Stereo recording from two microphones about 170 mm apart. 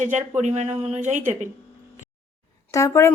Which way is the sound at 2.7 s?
20° left (ahead or behind).